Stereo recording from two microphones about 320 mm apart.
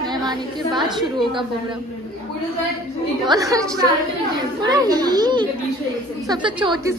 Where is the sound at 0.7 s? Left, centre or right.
Centre.